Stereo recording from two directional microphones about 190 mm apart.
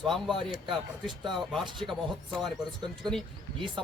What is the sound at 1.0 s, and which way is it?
Speech, 25° right (ahead or behind).